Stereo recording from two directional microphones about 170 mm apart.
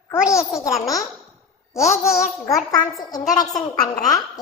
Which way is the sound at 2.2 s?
20° left (ahead or behind).